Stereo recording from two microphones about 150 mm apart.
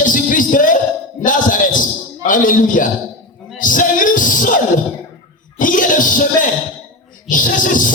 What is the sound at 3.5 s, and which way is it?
Music, 60° left (ahead or behind).